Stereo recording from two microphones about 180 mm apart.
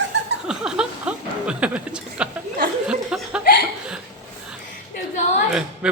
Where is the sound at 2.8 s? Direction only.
5° right (ahead or behind).